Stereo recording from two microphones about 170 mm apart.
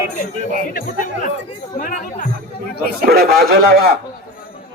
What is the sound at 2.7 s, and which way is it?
Speech, 65° right (ahead or behind).